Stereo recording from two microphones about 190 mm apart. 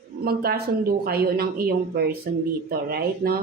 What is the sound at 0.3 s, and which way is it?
A woman's voice, 55° right (ahead or behind).